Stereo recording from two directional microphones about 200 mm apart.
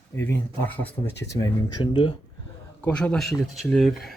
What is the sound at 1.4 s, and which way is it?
Speech, 20° left (ahead or behind).